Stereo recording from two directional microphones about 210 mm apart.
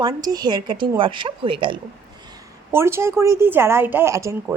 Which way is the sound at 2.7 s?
10° right (ahead or behind).